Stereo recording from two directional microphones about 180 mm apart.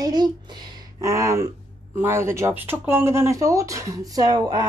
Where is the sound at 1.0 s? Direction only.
15° right (ahead or behind).